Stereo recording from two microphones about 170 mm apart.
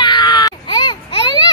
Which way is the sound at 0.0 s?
30° left (ahead or behind).